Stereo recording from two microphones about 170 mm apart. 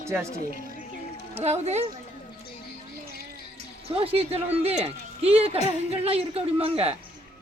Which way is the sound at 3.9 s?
35° right (ahead or behind).